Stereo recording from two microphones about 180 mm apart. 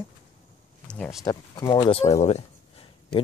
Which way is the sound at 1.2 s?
20° left (ahead or behind).